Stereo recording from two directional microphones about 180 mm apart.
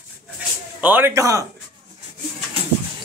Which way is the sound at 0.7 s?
10° right (ahead or behind).